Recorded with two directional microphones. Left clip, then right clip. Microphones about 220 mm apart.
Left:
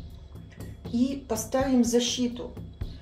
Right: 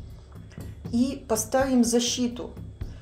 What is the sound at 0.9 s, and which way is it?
A woman's voice, 30° right (ahead or behind).